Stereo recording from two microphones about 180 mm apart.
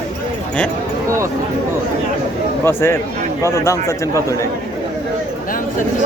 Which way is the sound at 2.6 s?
15° left (ahead or behind).